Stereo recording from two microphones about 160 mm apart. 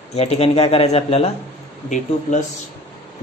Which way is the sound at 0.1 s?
40° left (ahead or behind).